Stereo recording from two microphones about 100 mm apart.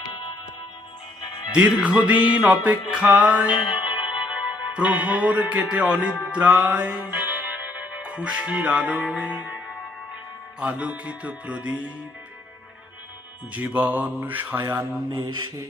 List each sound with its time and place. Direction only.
0.1 s music: 50° left (ahead or behind)
1.5 s music: 10° right (ahead or behind)
3.6 s music: 55° left (ahead or behind)
4.7 s music: 10° right (ahead or behind)
10.6 s music: 10° right (ahead or behind)
13.5 s music: 15° right (ahead or behind)
14.7 s speech: 20° right (ahead or behind)